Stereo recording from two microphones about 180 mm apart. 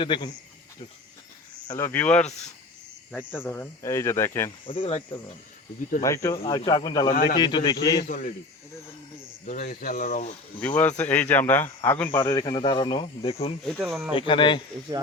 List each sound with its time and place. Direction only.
0.0 s a man's voice: 25° left (ahead or behind)
1.7 s speech: 10° left (ahead or behind)
4.6 s a man's voice: 30° left (ahead or behind)
6.0 s a man's voice: 20° left (ahead or behind)
7.1 s speech: 55° left (ahead or behind)
7.3 s a man's voice: 25° left (ahead or behind)
8.0 s speech: 45° left (ahead or behind)
9.5 s speech: 45° left (ahead or behind)
10.6 s speech: 10° left (ahead or behind); by 13.5 s 35° left (ahead or behind)
13.7 s speech: centre (ahead or behind)
14.1 s a man's voice: 30° left (ahead or behind)